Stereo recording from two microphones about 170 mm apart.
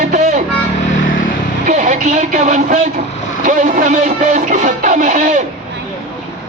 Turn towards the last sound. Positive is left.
turn(degrees=-50)  # may be behind; listen again after turning